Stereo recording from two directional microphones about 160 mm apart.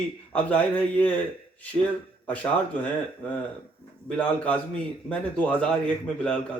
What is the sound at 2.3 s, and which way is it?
Speech, 10° left (ahead or behind).